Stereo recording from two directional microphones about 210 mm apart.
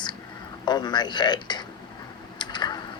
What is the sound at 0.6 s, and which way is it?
A woman's voice, 20° left (ahead or behind).